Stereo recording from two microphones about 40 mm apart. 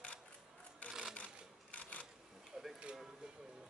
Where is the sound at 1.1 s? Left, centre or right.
Left.